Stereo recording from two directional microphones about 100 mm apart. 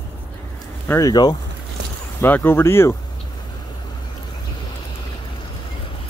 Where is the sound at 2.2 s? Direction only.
20° left (ahead or behind).